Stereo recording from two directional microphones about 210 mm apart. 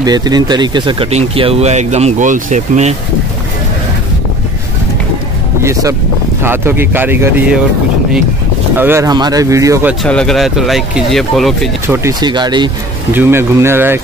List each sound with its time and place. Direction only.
0.0 s speech: 20° right (ahead or behind); by 2.9 s 35° right (ahead or behind)
5.6 s speech: 15° right (ahead or behind)
8.7 s speech: 10° right (ahead or behind)
10.0 s speech: 5° left (ahead or behind)
11.9 s speech: 15° right (ahead or behind)
13.1 s speech: 10° right (ahead or behind)